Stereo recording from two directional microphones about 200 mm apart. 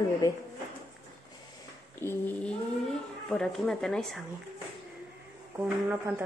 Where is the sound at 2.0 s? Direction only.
10° left (ahead or behind).